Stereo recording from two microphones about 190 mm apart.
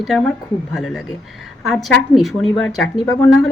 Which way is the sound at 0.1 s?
Centre (ahead or behind).